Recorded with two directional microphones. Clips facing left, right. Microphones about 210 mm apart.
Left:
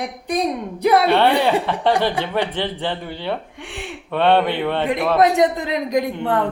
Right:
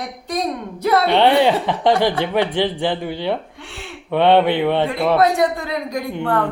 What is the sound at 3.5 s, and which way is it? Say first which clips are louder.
Gasp: left 3 dB; 15° left (ahead or behind).